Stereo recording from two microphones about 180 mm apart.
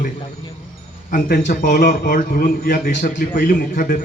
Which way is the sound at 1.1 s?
50° left (ahead or behind).